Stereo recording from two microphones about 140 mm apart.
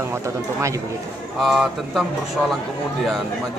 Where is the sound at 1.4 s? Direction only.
Centre (ahead or behind).